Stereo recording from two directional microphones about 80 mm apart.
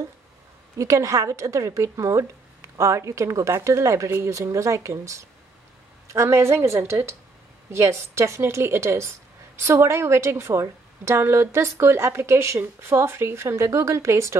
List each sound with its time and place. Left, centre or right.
0.7 s a woman's voice: right